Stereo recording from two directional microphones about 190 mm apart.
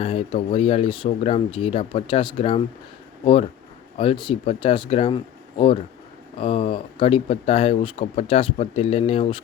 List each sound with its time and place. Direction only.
0.0 s speech: 30° left (ahead or behind)
3.9 s speech: 30° left (ahead or behind)